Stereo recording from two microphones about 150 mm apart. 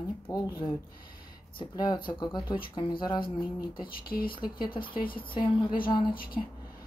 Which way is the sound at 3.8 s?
75° left (ahead or behind).